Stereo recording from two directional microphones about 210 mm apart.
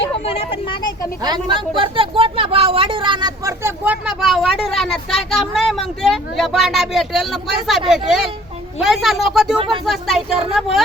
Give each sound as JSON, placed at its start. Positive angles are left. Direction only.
{"t": 0.3, "sound": "speech", "side_deg": 25}
{"t": 1.2, "sound": "speech", "side_deg": -20}